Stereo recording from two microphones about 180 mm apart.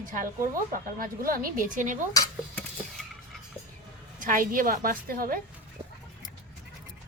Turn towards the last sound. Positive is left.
turn(degrees=-55)  # may be behind; listen again after turning